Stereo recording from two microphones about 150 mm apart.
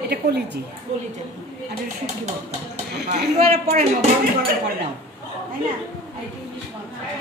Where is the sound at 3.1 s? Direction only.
55° right (ahead or behind).